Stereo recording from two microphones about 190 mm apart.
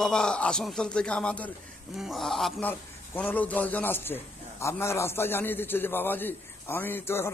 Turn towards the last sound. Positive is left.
turn(degrees=10)  # may be behind; listen again after turning